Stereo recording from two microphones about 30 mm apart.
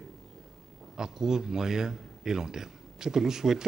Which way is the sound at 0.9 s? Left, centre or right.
Centre.